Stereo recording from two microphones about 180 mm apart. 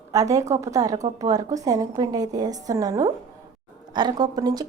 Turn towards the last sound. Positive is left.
turn(degrees=-20)  # may be behind; listen again after turning